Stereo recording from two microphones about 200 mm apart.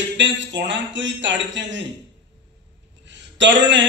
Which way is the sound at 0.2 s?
65° right (ahead or behind).